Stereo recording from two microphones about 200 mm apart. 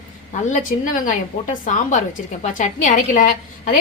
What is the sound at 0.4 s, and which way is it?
Speech, 40° left (ahead or behind).